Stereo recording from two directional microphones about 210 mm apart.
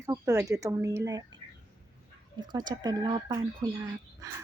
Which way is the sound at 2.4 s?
20° right (ahead or behind).